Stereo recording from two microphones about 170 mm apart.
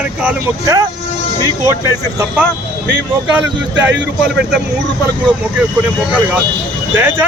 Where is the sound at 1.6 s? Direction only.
15° right (ahead or behind).